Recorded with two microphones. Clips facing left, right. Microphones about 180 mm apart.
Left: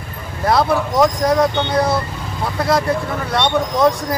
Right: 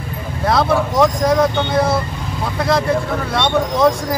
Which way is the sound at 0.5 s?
Centre (ahead or behind).